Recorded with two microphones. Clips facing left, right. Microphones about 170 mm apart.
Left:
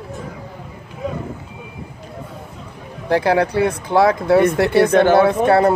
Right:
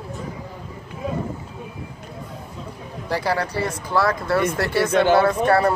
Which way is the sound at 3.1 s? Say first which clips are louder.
Left 7 dB; 60° left (ahead or behind).